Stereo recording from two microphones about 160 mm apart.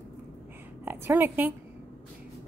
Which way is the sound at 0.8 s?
15° right (ahead or behind).